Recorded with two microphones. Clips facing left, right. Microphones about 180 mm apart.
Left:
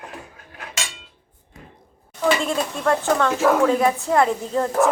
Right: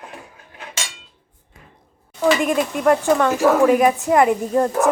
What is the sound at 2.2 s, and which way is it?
Speech, 15° right (ahead or behind).